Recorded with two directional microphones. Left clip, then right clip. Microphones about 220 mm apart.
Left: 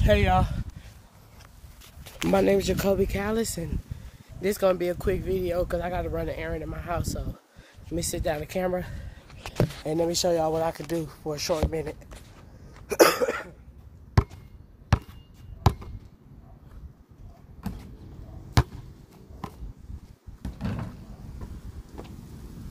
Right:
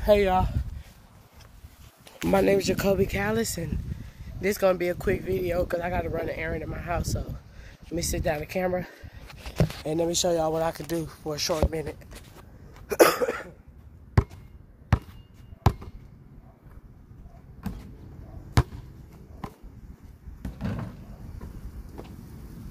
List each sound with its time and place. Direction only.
0.1 s a sound: 10° left (ahead or behind)
2.1 s speech: 5° left (ahead or behind)
12.8 s cough: 10° left (ahead or behind)
14.2 s basketball bounce: 5° left (ahead or behind)
15.6 s chop: 5° left (ahead or behind)
17.6 s vehicle: 5° left (ahead or behind)
18.6 s chop: 5° left (ahead or behind)
19.4 s a sound: 10° left (ahead or behind)
20.4 s door: 5° left (ahead or behind)